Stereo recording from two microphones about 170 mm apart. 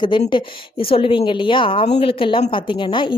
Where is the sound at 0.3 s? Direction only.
30° left (ahead or behind).